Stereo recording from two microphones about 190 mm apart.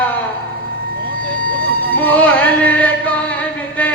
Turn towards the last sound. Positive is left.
turn(degrees=10)  # may be behind; listen again after turning